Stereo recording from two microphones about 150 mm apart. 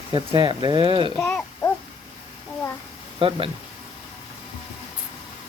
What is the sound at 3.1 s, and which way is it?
Speech, 40° right (ahead or behind).